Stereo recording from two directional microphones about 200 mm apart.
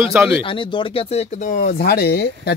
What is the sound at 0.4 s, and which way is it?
Speech, 25° left (ahead or behind).